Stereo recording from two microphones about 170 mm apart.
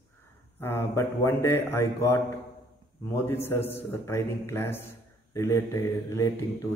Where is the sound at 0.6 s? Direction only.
15° left (ahead or behind).